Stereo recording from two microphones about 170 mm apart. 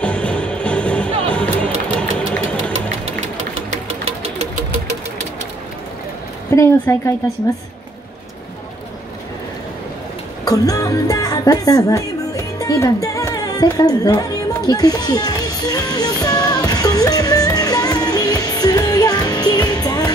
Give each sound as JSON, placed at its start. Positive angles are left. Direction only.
{"t": 0.0, "sound": "music", "side_deg": 5}
{"t": 2.1, "sound": "engine", "side_deg": 5}
{"t": 6.5, "sound": "a woman's voice", "side_deg": 15}
{"t": 10.4, "sound": "music", "side_deg": 20}